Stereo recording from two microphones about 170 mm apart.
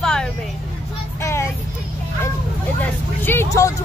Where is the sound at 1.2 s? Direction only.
15° left (ahead or behind).